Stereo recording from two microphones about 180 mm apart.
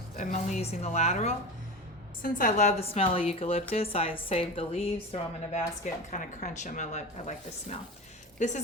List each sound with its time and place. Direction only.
0.2 s a woman's voice: 40° left (ahead or behind)
5.8 s a woman's voice: 40° left (ahead or behind)
8.4 s a woman's voice: 45° left (ahead or behind)